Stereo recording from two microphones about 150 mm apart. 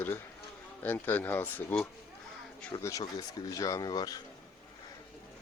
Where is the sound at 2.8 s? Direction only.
20° left (ahead or behind).